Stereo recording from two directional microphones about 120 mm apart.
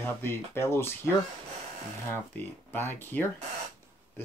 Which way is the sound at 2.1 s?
15° left (ahead or behind).